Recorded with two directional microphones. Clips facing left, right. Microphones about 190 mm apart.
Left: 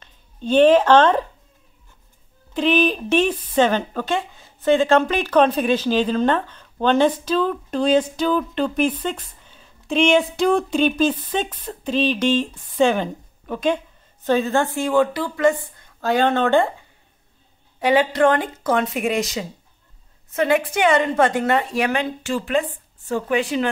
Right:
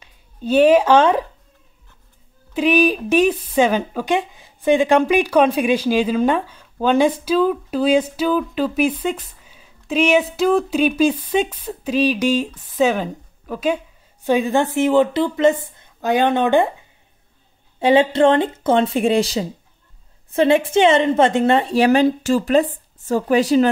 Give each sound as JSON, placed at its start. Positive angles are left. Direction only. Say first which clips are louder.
{"t": 0.0, "sound": "speech", "louder": "right 2 dB", "side_deg": -10}
{"t": 2.5, "sound": "speech", "louder": "right 2 dB", "side_deg": -10}
{"t": 17.7, "sound": "a woman's voice", "louder": "right 3 dB", "side_deg": -25}